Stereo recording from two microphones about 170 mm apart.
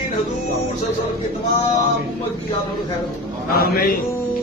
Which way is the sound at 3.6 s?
60° left (ahead or behind).